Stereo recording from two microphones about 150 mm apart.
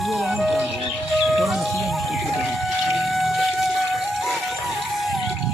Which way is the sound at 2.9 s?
Centre (ahead or behind).